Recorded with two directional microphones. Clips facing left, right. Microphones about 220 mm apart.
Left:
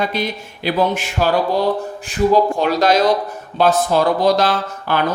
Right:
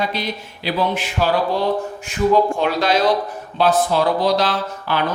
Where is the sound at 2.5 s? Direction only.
40° left (ahead or behind).